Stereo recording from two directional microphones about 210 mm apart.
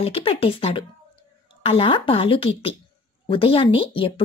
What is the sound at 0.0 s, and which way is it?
A woman's voice, 25° left (ahead or behind).